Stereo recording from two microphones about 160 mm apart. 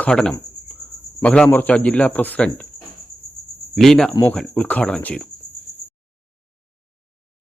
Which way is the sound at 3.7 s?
Centre (ahead or behind).